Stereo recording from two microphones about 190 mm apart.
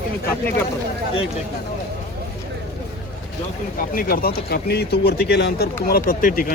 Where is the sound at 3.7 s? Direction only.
50° left (ahead or behind).